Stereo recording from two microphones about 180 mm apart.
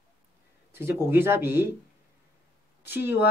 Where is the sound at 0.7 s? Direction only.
15° right (ahead or behind).